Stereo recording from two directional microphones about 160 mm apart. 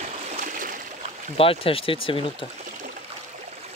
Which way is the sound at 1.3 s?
35° left (ahead or behind).